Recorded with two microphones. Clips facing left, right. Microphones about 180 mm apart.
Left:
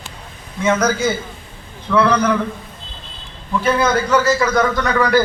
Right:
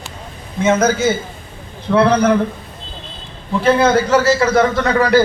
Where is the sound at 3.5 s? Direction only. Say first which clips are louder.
Right 4 dB; 30° right (ahead or behind).